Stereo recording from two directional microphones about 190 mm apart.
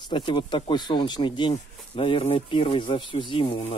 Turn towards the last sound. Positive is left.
turn(degrees=25)  # may be behind; listen again after turning